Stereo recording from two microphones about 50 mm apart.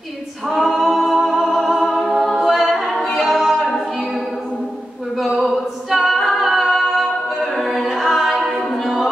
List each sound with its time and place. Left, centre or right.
0.5 s a capella: centre
5.1 s a capella: centre